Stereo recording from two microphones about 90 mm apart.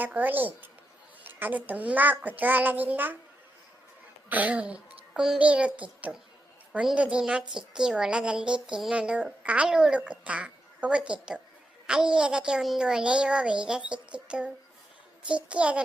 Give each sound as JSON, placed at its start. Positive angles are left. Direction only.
{"t": 0.0, "sound": "a child's voice", "side_deg": -20}
{"t": 4.3, "sound": "a woman's voice", "side_deg": -15}